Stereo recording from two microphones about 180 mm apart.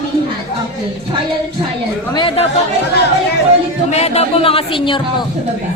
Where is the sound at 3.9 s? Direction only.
35° left (ahead or behind).